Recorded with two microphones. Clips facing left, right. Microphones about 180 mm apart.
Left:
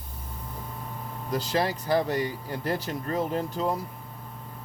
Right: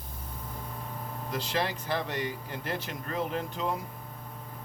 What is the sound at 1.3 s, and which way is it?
Speech, 40° left (ahead or behind).